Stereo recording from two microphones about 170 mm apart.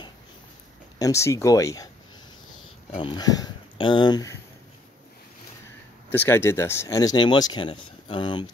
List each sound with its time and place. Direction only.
0.9 s speech: 20° left (ahead or behind)
2.9 s speech: 30° left (ahead or behind)
6.1 s speech: 15° left (ahead or behind)